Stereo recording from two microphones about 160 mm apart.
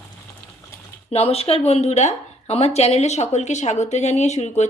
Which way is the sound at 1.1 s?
40° left (ahead or behind).